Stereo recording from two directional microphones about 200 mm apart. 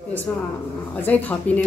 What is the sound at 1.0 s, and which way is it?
Speech, 10° left (ahead or behind).